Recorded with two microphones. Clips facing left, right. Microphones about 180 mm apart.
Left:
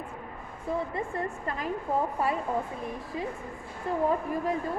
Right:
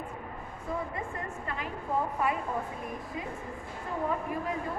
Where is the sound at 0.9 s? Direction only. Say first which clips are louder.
Left 5 dB; 35° left (ahead or behind).